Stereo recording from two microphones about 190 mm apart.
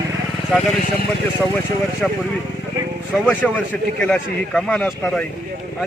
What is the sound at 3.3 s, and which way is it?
A man's voice, 5° left (ahead or behind).